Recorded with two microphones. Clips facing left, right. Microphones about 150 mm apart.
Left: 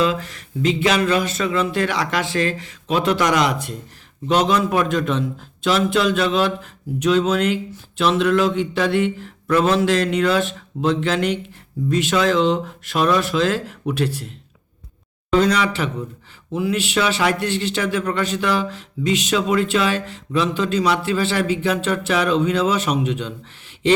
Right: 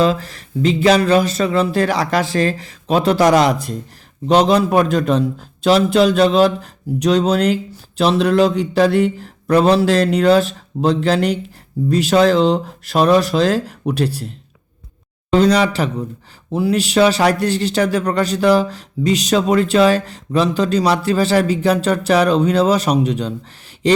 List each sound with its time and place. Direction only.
0.0 s a man's voice: 35° right (ahead or behind)